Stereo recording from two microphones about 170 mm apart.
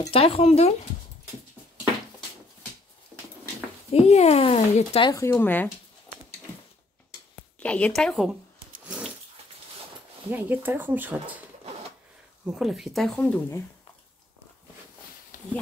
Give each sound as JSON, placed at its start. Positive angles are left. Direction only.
{"t": 0.1, "sound": "a child's voice", "side_deg": 35}
{"t": 3.9, "sound": "a child's voice", "side_deg": 40}
{"t": 5.1, "sound": "speech", "side_deg": 15}
{"t": 7.5, "sound": "speech", "side_deg": 10}
{"t": 8.8, "sound": "dog", "side_deg": -5}
{"t": 10.3, "sound": "speech", "side_deg": -10}
{"t": 12.4, "sound": "speech", "side_deg": -5}
{"t": 15.3, "sound": "a sound", "side_deg": 50}